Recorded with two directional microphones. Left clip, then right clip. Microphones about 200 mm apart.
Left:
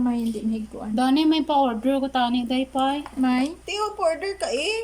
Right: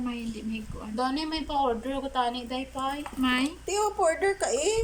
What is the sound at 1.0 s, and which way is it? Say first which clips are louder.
A woman's voice: left 9 dB; 55° left (ahead or behind).